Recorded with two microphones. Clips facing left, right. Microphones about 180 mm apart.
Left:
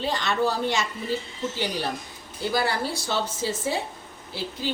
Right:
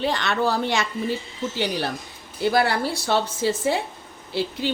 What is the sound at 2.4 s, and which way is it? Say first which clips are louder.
A woman's voice: right 5 dB; 65° right (ahead or behind).